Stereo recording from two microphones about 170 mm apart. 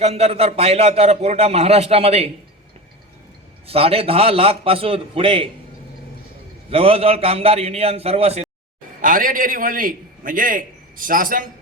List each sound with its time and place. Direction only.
0.0 s a man's voice: 40° right (ahead or behind)
3.7 s a man's voice: 35° right (ahead or behind)
6.7 s a man's voice: 35° right (ahead or behind)
9.0 s a man's voice: 55° right (ahead or behind)